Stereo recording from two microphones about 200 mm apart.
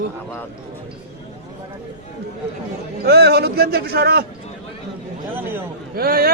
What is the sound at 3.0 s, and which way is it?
A man's voice, 55° right (ahead or behind).